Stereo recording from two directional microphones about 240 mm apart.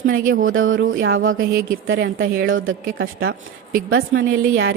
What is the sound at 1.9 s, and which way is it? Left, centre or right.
A woman's voice, right.